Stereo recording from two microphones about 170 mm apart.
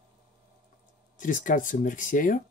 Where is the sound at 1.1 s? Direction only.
50° left (ahead or behind).